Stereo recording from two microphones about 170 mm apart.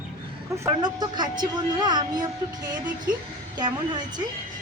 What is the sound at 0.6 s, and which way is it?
Speech, 25° right (ahead or behind).